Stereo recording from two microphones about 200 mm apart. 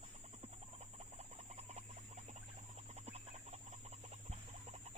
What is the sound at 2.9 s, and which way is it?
Chicken, 30° right (ahead or behind).